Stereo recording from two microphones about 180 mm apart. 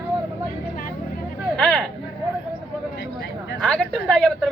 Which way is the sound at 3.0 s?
70° left (ahead or behind).